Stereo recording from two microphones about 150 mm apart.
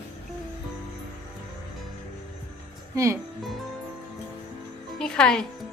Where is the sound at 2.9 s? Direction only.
20° right (ahead or behind).